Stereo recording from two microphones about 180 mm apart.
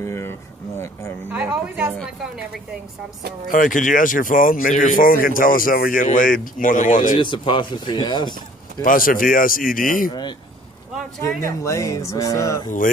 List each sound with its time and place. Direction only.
0.0 s speech: 15° left (ahead or behind)
1.3 s speech: 10° right (ahead or behind)
3.4 s speech: 50° left (ahead or behind)
7.2 s speech: 25° left (ahead or behind)
8.8 s speech: 50° left (ahead or behind)
11.2 s speech: 15° left (ahead or behind)